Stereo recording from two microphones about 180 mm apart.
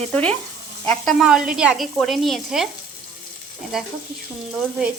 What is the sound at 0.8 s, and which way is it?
Sizzle, 5° left (ahead or behind).